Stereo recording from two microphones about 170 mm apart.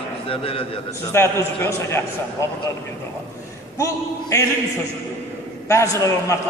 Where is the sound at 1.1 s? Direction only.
15° left (ahead or behind).